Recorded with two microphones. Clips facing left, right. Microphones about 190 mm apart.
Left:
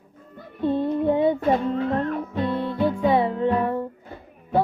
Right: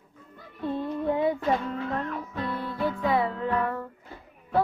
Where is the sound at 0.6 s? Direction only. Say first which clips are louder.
Left 7 dB; 30° left (ahead or behind).